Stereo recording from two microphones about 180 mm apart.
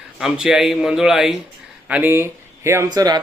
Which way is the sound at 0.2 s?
5° right (ahead or behind).